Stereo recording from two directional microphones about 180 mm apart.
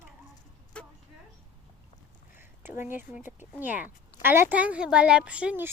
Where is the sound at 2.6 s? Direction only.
10° right (ahead or behind).